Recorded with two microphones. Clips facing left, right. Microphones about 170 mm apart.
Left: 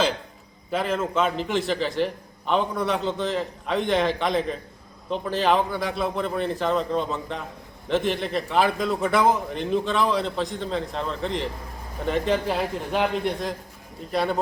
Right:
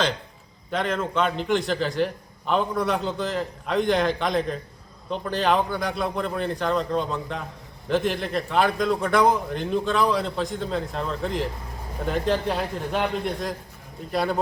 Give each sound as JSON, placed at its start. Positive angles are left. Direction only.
{"t": 0.7, "sound": "a man's voice", "side_deg": 5}